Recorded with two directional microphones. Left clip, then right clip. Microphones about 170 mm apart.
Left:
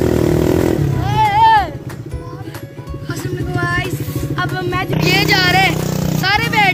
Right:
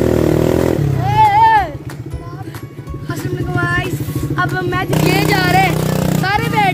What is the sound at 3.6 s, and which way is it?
Vehicle, 45° right (ahead or behind).